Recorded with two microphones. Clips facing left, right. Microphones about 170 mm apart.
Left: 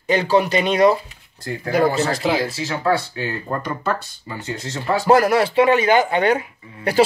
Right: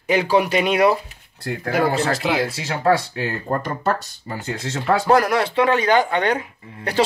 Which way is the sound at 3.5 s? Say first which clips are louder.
Right 4 dB; 35° right (ahead or behind).